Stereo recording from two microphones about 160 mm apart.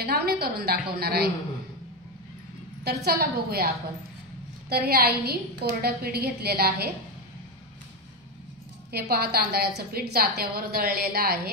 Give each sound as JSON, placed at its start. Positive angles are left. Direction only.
{"t": 0.0, "sound": "a woman's voice", "side_deg": -85}
{"t": 2.8, "sound": "a woman's voice", "side_deg": -85}
{"t": 8.9, "sound": "a woman's voice", "side_deg": -80}